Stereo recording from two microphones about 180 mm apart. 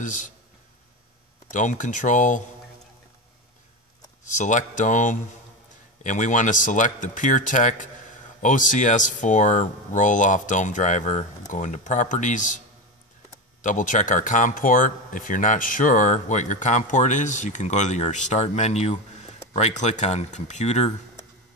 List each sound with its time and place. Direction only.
1.5 s speech: 45° left (ahead or behind)
4.4 s speech: 45° left (ahead or behind)